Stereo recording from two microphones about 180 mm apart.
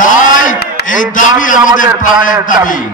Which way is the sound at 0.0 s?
45° left (ahead or behind).